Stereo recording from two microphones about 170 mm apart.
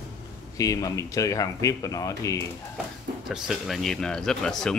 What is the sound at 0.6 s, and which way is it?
Speech, 20° left (ahead or behind).